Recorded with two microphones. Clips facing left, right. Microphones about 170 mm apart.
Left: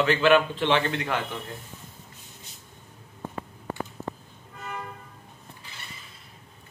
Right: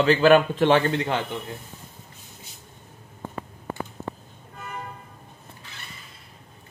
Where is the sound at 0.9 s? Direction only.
25° right (ahead or behind).